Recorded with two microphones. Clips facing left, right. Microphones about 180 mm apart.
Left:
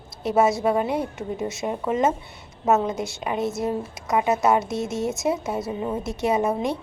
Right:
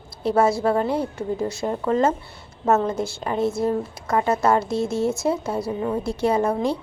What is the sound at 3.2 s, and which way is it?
Speech, 15° left (ahead or behind).